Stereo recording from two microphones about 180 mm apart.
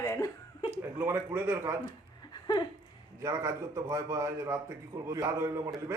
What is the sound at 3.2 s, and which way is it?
A woman's voice, 15° right (ahead or behind).